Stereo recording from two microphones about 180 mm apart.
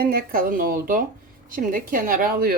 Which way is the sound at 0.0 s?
55° right (ahead or behind).